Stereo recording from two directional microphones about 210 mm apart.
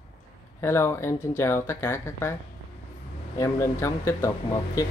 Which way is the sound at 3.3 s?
15° left (ahead or behind).